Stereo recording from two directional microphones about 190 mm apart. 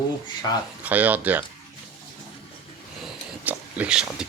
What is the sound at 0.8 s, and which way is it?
Speech, 10° right (ahead or behind).